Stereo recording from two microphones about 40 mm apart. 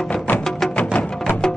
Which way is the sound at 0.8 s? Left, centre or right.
Left.